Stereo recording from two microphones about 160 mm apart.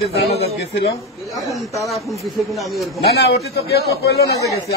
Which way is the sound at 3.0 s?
90° left.